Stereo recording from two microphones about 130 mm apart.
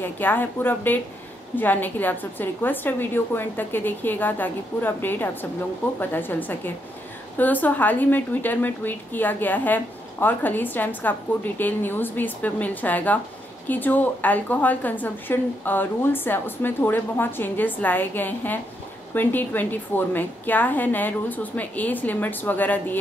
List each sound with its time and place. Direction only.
0.0 s a woman's voice: 15° left (ahead or behind)